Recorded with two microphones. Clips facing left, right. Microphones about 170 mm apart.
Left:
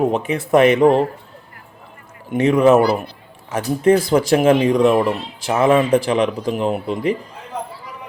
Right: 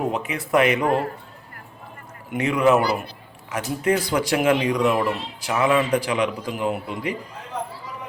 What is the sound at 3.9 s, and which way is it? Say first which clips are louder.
Speech: left 7 dB; 45° left (ahead or behind).